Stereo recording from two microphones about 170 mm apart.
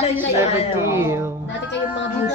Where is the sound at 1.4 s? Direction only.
90° left.